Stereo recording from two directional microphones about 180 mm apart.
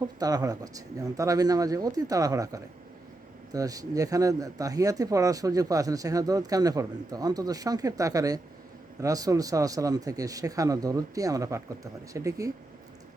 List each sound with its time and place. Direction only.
0.2 s speech: 20° right (ahead or behind)